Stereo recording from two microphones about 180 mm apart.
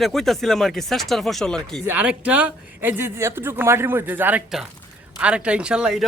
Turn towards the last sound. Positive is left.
turn(degrees=-5)  # may be behind; listen again after turning